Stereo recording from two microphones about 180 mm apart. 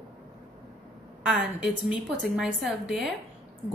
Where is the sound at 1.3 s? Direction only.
5° right (ahead or behind).